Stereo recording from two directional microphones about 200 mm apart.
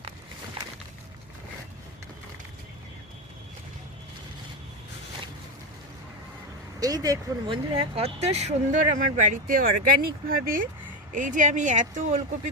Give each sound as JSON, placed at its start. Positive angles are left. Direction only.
{"t": 6.7, "sound": "speech", "side_deg": -20}